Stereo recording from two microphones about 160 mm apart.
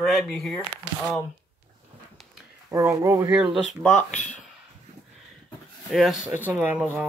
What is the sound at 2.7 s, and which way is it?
Speech, 20° right (ahead or behind).